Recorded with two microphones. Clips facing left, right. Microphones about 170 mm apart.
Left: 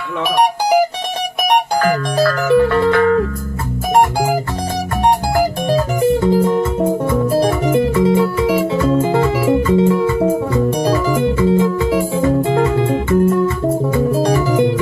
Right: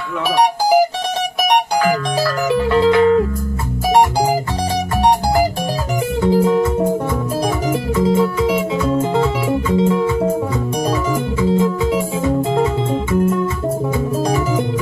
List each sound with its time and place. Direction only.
2.1 s music: 55° left (ahead or behind)
2.7 s music: 20° right (ahead or behind)
6.2 s music: centre (ahead or behind)
7.7 s music: centre (ahead or behind)